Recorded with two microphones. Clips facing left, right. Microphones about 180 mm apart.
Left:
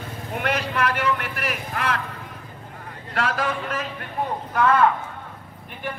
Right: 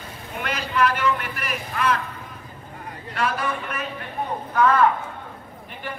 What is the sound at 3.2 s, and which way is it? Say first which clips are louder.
Speech: left 1 dB; 90° left.